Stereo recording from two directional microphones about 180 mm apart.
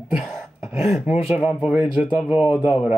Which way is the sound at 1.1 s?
35° left (ahead or behind).